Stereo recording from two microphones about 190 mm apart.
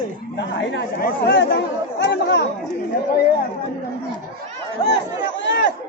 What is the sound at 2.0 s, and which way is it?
Speech, 70° left (ahead or behind).